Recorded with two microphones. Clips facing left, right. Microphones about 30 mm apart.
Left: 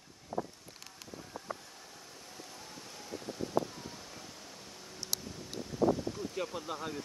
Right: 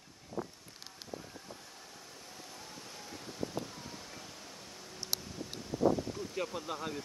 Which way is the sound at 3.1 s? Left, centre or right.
Centre.